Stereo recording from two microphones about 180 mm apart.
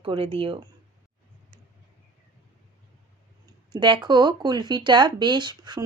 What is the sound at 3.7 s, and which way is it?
Speech, 25° right (ahead or behind).